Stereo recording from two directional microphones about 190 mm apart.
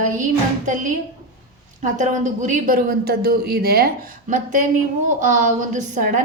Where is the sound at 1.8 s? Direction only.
40° right (ahead or behind).